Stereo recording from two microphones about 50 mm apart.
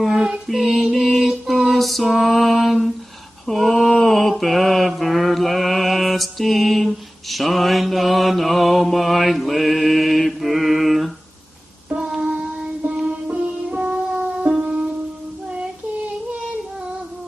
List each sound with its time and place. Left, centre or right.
0.0 s female singing: centre
0.9 s music: centre
3.4 s mantra: centre
11.9 s music: centre